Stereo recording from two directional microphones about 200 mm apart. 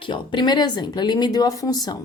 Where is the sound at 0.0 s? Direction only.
25° left (ahead or behind).